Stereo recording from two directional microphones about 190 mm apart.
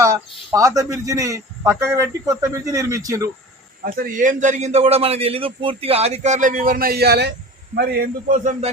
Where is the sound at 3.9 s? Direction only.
45° right (ahead or behind).